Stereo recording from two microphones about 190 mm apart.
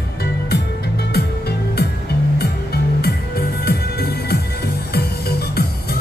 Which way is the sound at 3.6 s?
55° left (ahead or behind).